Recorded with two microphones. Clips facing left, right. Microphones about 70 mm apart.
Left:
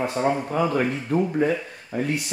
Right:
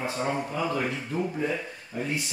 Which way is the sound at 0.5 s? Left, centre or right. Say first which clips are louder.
Left 6 dB; left.